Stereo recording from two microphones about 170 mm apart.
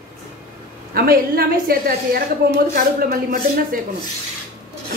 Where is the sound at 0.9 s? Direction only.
60° right (ahead or behind).